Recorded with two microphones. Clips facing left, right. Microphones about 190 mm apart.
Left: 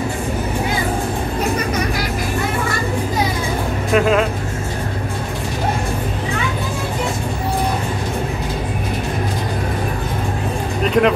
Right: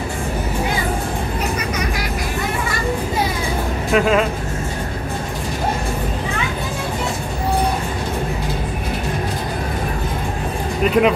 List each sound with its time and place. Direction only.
3.9 s speech: centre (ahead or behind)
10.8 s music: 5° right (ahead or behind)